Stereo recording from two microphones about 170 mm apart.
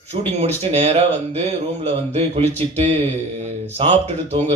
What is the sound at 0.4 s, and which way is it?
Speech, 40° right (ahead or behind).